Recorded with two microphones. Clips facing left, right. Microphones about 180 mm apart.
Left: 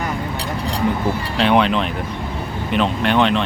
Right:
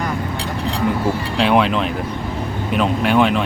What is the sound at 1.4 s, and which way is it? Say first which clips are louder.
Speech: even; 5° right (ahead or behind).